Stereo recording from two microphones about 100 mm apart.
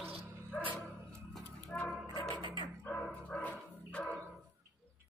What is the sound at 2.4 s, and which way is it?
Music, 50° right (ahead or behind).